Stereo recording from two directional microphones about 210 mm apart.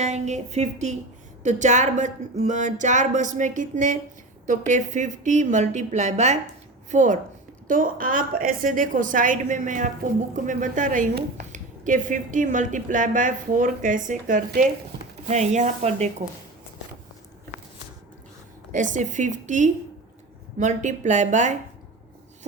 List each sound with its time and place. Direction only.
0.0 s a woman's voice: 35° right (ahead or behind)
18.7 s a woman's voice: 35° right (ahead or behind)